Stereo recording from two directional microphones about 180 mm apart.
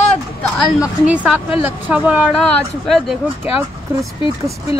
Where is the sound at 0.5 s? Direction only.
5° right (ahead or behind).